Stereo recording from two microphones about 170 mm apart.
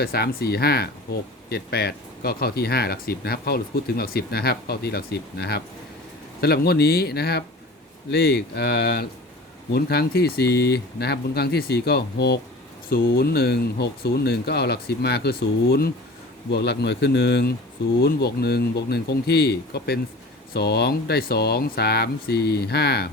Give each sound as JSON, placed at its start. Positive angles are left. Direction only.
{"t": 0.0, "sound": "speech", "side_deg": 65}
{"t": 12.9, "sound": "speech", "side_deg": 65}